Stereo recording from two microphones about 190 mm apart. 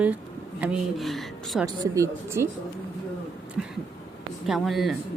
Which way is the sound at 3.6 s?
Centre (ahead or behind).